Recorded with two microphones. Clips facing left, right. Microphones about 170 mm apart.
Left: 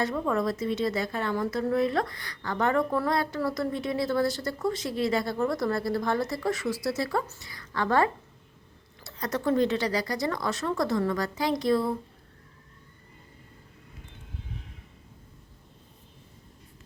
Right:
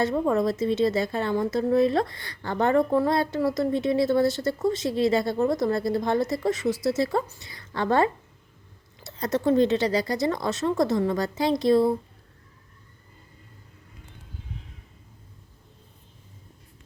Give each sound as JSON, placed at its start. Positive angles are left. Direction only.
{"t": 0.0, "sound": "a woman's voice", "side_deg": -25}